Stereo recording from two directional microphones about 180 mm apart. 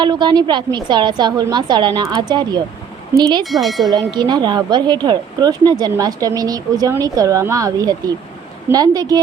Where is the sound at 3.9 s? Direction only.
25° right (ahead or behind).